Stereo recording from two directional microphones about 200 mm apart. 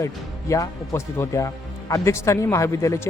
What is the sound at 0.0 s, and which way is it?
Speech, 15° left (ahead or behind).